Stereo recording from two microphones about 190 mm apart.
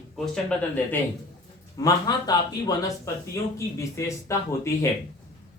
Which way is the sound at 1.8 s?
20° left (ahead or behind).